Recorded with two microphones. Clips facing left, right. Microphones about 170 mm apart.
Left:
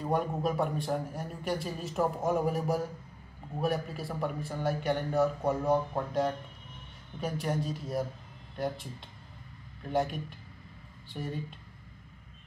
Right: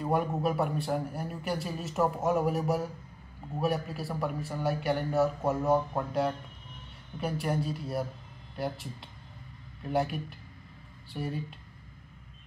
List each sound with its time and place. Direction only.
0.0 s a man's voice: 5° right (ahead or behind)
9.8 s a man's voice: 5° right (ahead or behind)